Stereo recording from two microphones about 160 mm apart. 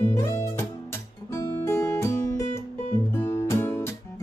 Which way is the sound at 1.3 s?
20° left (ahead or behind).